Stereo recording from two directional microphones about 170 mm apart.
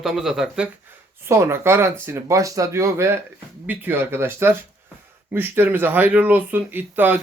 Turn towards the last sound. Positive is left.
turn(degrees=-10)  # may be behind; listen again after turning